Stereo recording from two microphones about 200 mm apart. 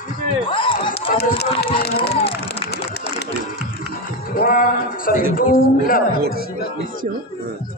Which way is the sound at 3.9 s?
45° left (ahead or behind).